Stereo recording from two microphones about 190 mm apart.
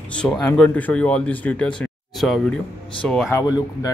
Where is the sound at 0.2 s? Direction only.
5° left (ahead or behind).